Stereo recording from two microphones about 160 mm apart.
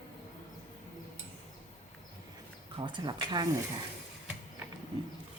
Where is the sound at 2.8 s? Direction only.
30° right (ahead or behind).